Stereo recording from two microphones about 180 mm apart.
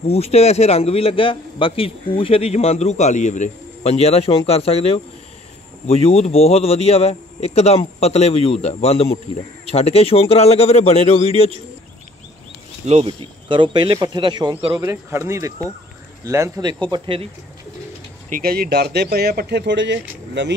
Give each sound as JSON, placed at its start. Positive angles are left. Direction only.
{"t": 0.0, "sound": "a man's voice", "side_deg": 35}
{"t": 12.8, "sound": "speech", "side_deg": -35}
{"t": 14.8, "sound": "speech", "side_deg": -15}
{"t": 18.3, "sound": "speech", "side_deg": -55}